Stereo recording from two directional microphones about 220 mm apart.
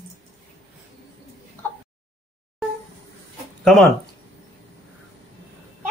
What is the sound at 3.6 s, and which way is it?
Speech, centre (ahead or behind).